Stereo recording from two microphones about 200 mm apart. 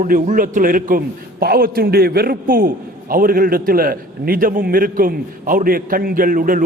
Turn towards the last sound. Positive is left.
turn(degrees=-45)  # may be behind; listen again after turning